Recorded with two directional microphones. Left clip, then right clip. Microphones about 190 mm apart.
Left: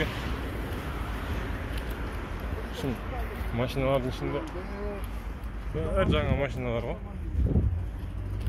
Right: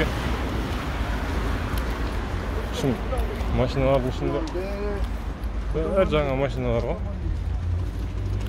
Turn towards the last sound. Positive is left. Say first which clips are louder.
# right 6 dB
turn(degrees=0)  # may be behind; listen again after turning